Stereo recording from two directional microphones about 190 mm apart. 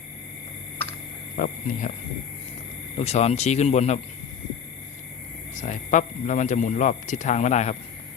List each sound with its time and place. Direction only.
1.4 s speech: 45° left (ahead or behind)
3.0 s speech: 35° left (ahead or behind)
5.5 s speech: 40° left (ahead or behind)